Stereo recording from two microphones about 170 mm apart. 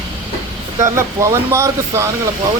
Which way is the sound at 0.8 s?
15° right (ahead or behind).